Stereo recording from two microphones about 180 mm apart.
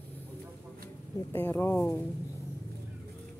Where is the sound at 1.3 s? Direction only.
10° left (ahead or behind).